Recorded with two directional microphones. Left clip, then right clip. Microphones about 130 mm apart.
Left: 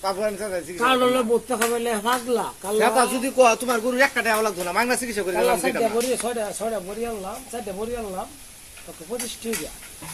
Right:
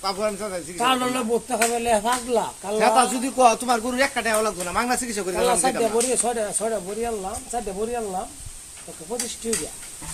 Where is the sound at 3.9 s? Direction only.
20° right (ahead or behind); by 5.4 s 40° right (ahead or behind).